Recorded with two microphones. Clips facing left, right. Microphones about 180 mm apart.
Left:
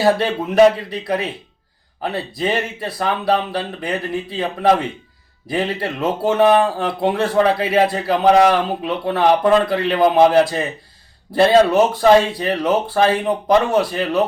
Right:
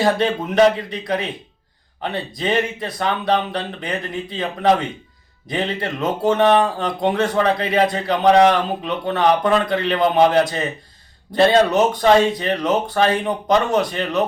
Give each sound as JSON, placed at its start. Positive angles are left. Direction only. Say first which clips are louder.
{"t": 0.0, "sound": "speech", "louder": "left 1 dB", "side_deg": 5}
{"t": 12.8, "sound": "speech", "louder": "left 2 dB", "side_deg": 30}
{"t": 13.7, "sound": "speech", "louder": "left 2 dB", "side_deg": 5}